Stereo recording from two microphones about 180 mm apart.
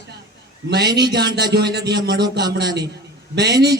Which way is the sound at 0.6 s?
65° right (ahead or behind).